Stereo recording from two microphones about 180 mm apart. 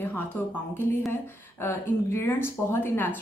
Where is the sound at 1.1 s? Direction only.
15° left (ahead or behind).